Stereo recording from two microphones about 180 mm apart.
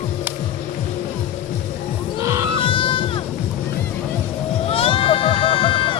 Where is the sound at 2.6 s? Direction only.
30° left (ahead or behind).